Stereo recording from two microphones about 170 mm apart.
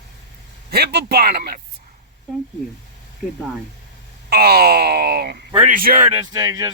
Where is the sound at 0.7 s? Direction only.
70° right (ahead or behind).